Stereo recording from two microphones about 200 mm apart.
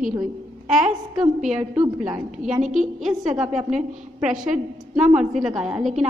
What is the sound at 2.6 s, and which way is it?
Speech, 35° right (ahead or behind).